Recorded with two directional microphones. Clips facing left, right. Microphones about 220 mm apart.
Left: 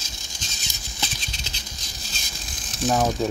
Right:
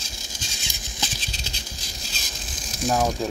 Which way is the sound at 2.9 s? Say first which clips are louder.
Left 1 dB; 5° left (ahead or behind).